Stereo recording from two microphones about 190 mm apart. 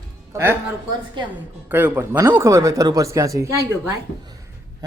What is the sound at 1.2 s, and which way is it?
Speech, 25° right (ahead or behind).